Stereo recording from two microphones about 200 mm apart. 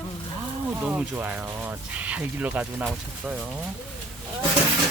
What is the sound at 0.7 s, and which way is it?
Speech, 5° right (ahead or behind).